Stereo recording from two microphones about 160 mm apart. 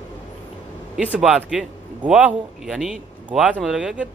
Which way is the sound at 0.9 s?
5° right (ahead or behind).